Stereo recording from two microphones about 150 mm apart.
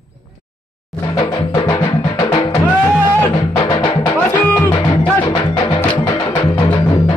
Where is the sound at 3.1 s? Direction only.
10° left (ahead or behind).